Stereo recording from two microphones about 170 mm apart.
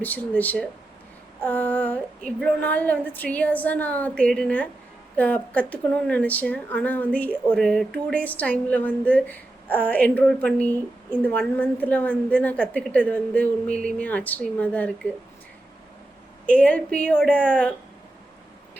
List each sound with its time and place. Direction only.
0.0 s speech: 10° left (ahead or behind)
16.5 s speech: 10° left (ahead or behind)